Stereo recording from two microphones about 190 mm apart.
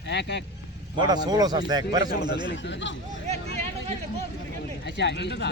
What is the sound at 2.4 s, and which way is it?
Speech, 70° left (ahead or behind).